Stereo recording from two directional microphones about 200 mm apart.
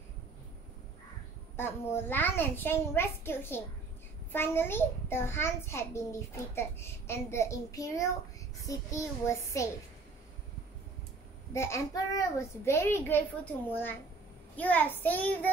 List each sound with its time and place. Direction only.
1.6 s a child's voice: 10° left (ahead or behind)
11.5 s a child's voice: 15° left (ahead or behind)